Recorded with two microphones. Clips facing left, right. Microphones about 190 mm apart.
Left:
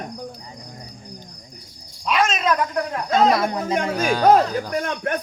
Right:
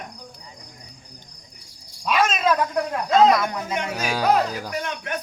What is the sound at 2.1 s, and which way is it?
Cat, 5° right (ahead or behind).